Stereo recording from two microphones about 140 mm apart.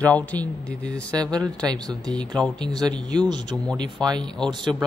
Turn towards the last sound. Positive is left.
turn(degrees=-35)  # may be behind; listen again after turning